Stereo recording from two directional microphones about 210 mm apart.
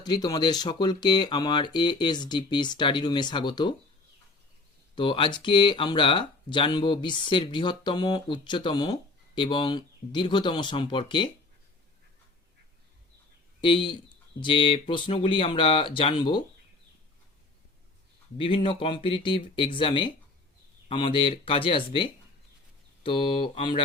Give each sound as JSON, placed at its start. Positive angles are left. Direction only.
{"t": 0.0, "sound": "speech", "side_deg": 20}
{"t": 4.9, "sound": "speech", "side_deg": 25}
{"t": 13.6, "sound": "speech", "side_deg": 25}
{"t": 18.3, "sound": "speech", "side_deg": 25}